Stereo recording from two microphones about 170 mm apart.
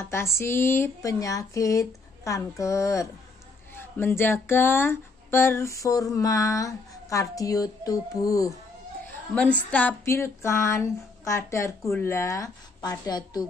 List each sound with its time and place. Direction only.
0.0 s speech: 15° left (ahead or behind)
9.3 s speech: 5° left (ahead or behind); by 13.5 s 25° left (ahead or behind)